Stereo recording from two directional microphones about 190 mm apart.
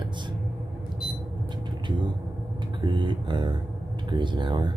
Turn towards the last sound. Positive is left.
turn(degrees=-25)  # may be behind; listen again after turning